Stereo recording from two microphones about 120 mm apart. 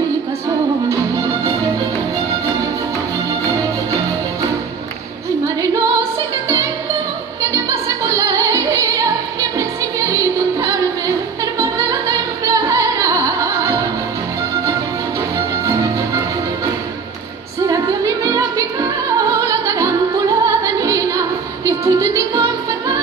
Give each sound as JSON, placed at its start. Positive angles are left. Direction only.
{"t": 5.6, "sound": "music", "side_deg": -30}
{"t": 7.5, "sound": "music", "side_deg": -25}
{"t": 15.3, "sound": "music", "side_deg": -25}
{"t": 17.6, "sound": "music", "side_deg": -30}